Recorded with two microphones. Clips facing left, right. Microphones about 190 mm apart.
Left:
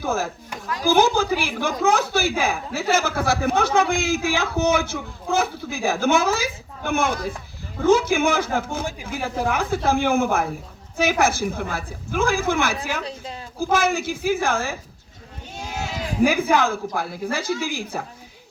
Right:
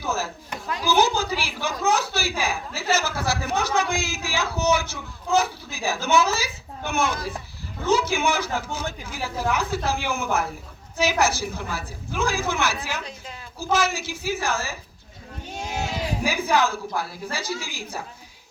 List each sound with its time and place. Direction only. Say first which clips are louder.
0.0 s chop: left 4 dB; 55° left (ahead or behind)
0.8 s a sound: left 4 dB; 50° left (ahead or behind)
1.8 s speech: left 4 dB; 55° left (ahead or behind)
13.0 s speech: left 5 dB; 35° left (ahead or behind)
13.6 s speech: left 3 dB; 55° left (ahead or behind)
16.2 s speech: left 5 dB; 55° left (ahead or behind)